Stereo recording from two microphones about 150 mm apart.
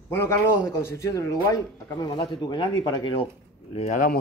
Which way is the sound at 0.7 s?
20° left (ahead or behind).